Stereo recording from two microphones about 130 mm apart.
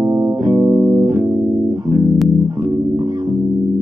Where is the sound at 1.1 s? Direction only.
25° right (ahead or behind).